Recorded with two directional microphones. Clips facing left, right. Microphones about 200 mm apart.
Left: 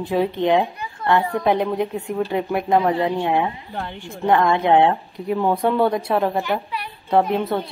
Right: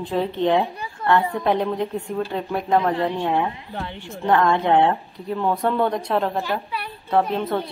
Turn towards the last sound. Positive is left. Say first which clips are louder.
# left 2 dB
turn(degrees=15)  # may be behind; listen again after turning